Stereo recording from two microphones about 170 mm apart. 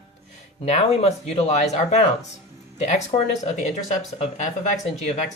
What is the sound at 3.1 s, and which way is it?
Speech, 30° left (ahead or behind).